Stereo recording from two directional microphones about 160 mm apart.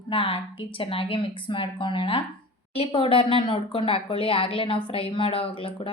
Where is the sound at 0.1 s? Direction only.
35° left (ahead or behind).